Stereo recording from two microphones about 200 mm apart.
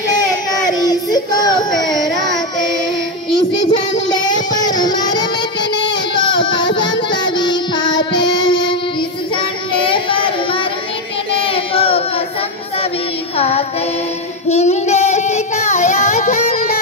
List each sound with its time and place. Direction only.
0.7 s child singing: 20° left (ahead or behind)
3.3 s child singing: 25° left (ahead or behind)
4.5 s music: 20° left (ahead or behind)
6.1 s child singing: 25° left (ahead or behind)
13.4 s music: 30° left (ahead or behind)
14.5 s child singing: 35° left (ahead or behind)